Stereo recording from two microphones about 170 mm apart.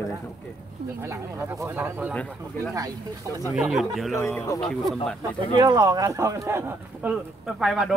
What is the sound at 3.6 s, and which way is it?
Speech, centre (ahead or behind).